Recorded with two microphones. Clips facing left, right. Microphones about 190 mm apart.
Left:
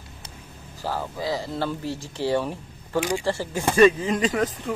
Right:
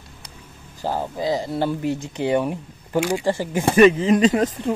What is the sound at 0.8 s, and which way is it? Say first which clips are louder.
Speech: right 4 dB; 20° right (ahead or behind).